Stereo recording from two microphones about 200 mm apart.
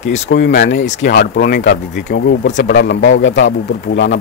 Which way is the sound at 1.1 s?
55° left (ahead or behind).